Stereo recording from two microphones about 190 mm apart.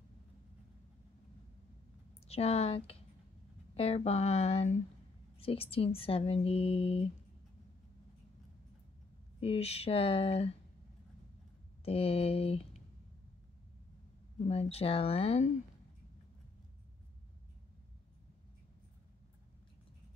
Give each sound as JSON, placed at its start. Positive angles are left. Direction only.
{"t": 2.2, "sound": "speech", "side_deg": 30}
{"t": 9.4, "sound": "speech", "side_deg": 30}
{"t": 11.8, "sound": "speech", "side_deg": 30}
{"t": 14.5, "sound": "speech", "side_deg": 30}